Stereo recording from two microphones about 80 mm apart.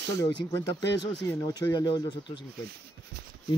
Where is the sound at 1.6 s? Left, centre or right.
Left.